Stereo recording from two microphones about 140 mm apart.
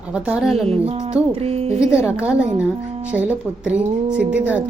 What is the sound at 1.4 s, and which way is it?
Speech, 45° right (ahead or behind).